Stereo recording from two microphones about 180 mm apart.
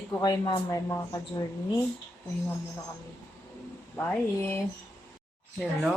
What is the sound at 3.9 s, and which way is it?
Speech, 15° left (ahead or behind).